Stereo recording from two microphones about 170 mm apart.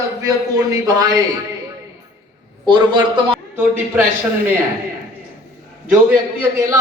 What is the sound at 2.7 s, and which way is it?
Speech, 25° right (ahead or behind).